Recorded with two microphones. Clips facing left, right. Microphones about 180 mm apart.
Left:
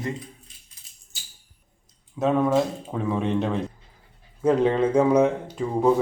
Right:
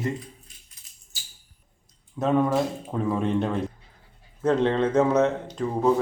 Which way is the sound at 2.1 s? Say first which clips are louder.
Left 1 dB; centre (ahead or behind).